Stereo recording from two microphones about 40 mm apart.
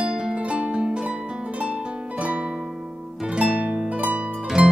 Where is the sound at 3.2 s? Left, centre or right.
Right.